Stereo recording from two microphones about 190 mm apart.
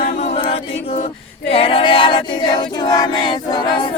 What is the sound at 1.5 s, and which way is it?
Choir, 30° left (ahead or behind).